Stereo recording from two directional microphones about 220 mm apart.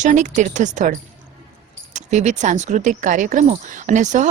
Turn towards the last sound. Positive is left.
turn(degrees=-35)  # may be behind; listen again after turning